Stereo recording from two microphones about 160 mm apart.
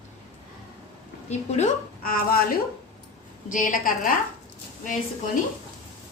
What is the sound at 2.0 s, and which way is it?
A woman's voice, 65° left (ahead or behind).